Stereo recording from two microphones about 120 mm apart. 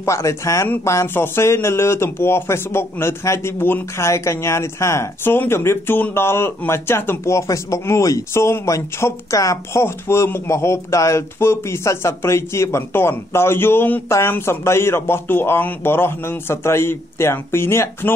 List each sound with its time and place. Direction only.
0.0 s speech: 25° left (ahead or behind)